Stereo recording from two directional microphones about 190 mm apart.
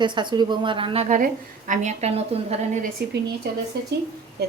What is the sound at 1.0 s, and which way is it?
A woman's voice, 40° right (ahead or behind).